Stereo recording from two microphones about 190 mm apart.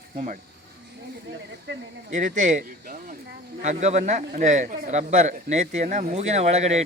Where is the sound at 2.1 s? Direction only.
45° right (ahead or behind).